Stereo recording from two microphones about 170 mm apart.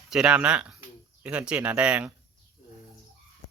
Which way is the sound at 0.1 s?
5° right (ahead or behind).